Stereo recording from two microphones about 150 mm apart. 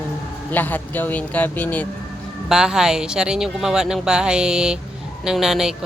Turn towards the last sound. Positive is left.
turn(degrees=-5)  # may be behind; listen again after turning